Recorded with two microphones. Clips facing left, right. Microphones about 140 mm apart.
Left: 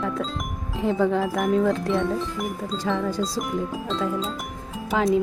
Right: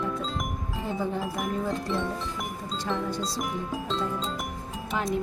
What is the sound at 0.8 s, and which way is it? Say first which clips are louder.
Speech: left 9 dB; 90° left.